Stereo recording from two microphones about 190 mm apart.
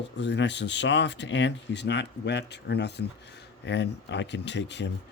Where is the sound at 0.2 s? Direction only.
65° left (ahead or behind).